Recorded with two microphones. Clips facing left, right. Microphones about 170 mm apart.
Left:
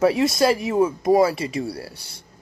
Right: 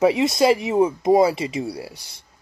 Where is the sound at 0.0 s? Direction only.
20° right (ahead or behind).